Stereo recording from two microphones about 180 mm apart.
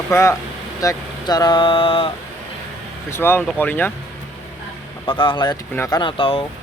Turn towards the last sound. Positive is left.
turn(degrees=30)  # may be behind; listen again after turning